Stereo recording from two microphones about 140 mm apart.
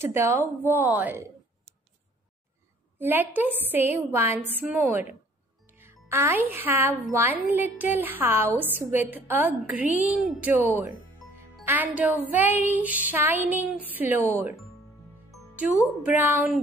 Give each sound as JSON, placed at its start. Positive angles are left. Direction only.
{"t": 0.0, "sound": "a woman's voice", "side_deg": -20}
{"t": 3.0, "sound": "a woman's voice", "side_deg": -15}
{"t": 5.7, "sound": "music", "side_deg": -15}
{"t": 6.0, "sound": "a woman's voice", "side_deg": -15}
{"t": 15.3, "sound": "music", "side_deg": -10}
{"t": 16.0, "sound": "a woman's voice", "side_deg": -15}